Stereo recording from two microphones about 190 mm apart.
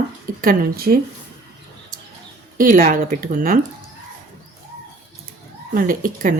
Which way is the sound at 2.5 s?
45° right (ahead or behind).